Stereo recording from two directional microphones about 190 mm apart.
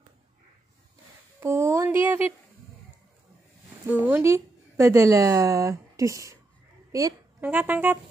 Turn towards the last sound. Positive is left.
turn(degrees=-10)  # may be behind; listen again after turning